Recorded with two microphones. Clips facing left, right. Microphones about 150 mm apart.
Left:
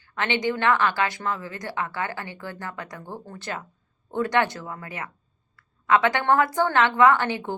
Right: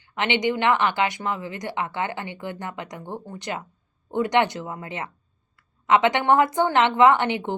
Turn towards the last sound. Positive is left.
turn(degrees=-20)  # may be behind; listen again after turning